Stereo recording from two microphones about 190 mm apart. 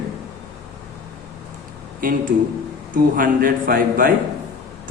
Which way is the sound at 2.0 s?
45° right (ahead or behind).